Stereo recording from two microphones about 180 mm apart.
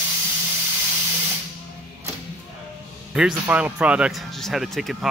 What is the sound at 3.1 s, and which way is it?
Speech, 5° right (ahead or behind).